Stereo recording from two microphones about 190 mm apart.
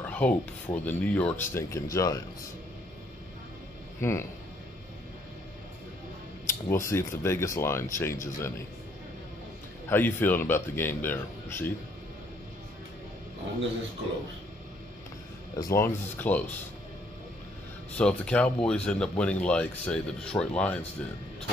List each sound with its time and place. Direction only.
0.0 s a sound: 5° left (ahead or behind)
0.8 s speech: 5° left (ahead or behind)
4.0 s speech: 15° left (ahead or behind)
6.4 s speech: 15° left (ahead or behind)
9.8 s speech: 10° left (ahead or behind)
15.5 s speech: 15° left (ahead or behind)
17.9 s speech: 5° left (ahead or behind)